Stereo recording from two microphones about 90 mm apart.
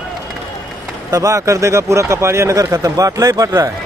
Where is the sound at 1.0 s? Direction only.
35° right (ahead or behind).